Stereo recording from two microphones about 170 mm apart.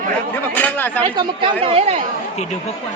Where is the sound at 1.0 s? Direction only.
25° right (ahead or behind).